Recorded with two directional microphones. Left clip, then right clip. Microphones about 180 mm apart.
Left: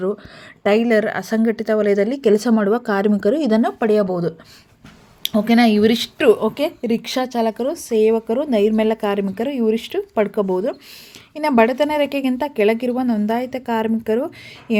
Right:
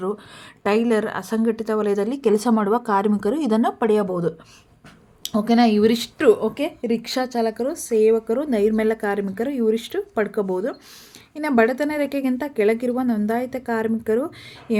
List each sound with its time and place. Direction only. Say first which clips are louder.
0.6 s a woman's voice: left 4 dB; 20° left (ahead or behind)